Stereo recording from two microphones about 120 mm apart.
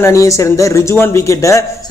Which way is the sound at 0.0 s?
25° left (ahead or behind).